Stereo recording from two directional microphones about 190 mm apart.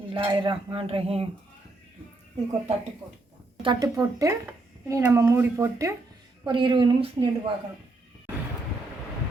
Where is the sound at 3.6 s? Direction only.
20° right (ahead or behind).